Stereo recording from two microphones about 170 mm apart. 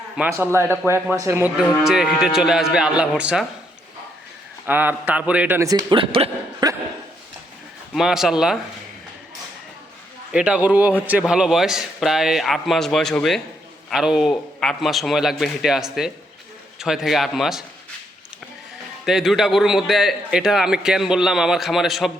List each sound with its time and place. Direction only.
0.2 s a man's voice: 10° right (ahead or behind)
4.6 s speech: 10° right (ahead or behind)
5.6 s speech: 25° right (ahead or behind)
6.6 s dog: 25° right (ahead or behind)
7.9 s a man's voice: centre (ahead or behind)
10.3 s a man's voice: 5° right (ahead or behind)
19.0 s a man's voice: centre (ahead or behind)